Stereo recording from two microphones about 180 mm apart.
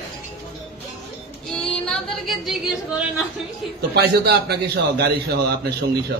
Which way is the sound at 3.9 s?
65° right (ahead or behind).